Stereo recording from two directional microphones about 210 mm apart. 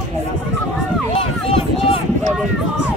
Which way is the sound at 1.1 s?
30° left (ahead or behind).